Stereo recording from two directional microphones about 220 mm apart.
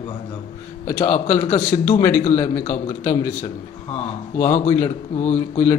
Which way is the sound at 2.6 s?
35° left (ahead or behind).